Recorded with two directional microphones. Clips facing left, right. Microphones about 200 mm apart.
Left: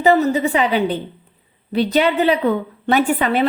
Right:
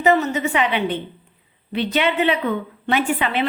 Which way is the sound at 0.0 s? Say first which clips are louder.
Left 3 dB; 35° left (ahead or behind).